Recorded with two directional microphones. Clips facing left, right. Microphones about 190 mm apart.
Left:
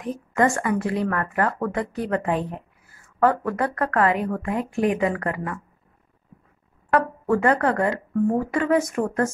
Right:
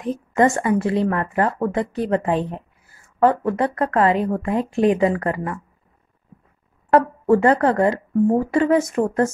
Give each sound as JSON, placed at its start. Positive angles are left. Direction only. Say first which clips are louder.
{"t": 0.0, "sound": "speech", "louder": "right 4 dB", "side_deg": -25}
{"t": 6.9, "sound": "speech", "louder": "right 5 dB", "side_deg": -30}